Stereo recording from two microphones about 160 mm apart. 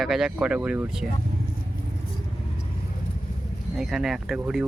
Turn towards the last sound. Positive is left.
turn(degrees=0)  # may be behind; listen again after turning